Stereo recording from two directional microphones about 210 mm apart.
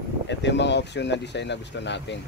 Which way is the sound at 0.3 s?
55° left (ahead or behind).